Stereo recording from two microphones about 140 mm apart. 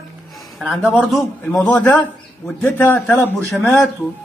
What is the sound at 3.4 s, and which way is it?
Speech, 5° left (ahead or behind).